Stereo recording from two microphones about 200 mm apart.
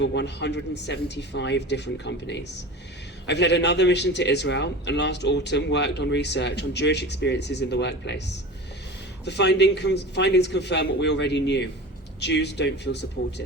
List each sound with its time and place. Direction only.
0.0 s a man's voice: 60° left (ahead or behind)